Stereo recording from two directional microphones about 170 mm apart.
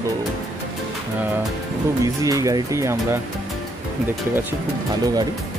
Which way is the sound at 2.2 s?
20° right (ahead or behind).